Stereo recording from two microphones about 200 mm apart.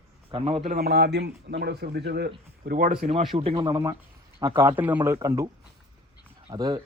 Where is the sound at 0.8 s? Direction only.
55° right (ahead or behind).